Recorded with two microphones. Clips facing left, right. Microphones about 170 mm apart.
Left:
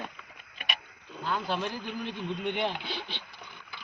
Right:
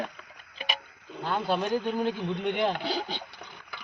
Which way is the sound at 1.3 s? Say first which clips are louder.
Right 5 dB; 60° right (ahead or behind).